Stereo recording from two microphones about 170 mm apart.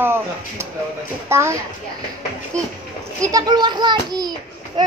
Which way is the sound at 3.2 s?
20° right (ahead or behind).